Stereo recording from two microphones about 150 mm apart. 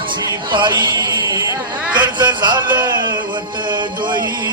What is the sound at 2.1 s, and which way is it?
Music, 30° right (ahead or behind).